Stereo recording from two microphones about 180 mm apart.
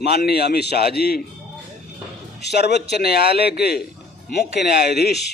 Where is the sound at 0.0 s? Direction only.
65° left (ahead or behind).